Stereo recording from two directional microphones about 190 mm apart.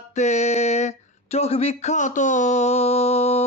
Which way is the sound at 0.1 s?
35° left (ahead or behind).